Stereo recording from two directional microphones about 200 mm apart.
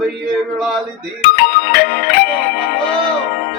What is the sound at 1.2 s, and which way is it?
Music, 50° left (ahead or behind).